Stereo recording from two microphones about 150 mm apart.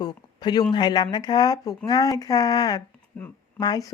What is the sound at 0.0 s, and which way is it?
A woman's voice, 25° left (ahead or behind).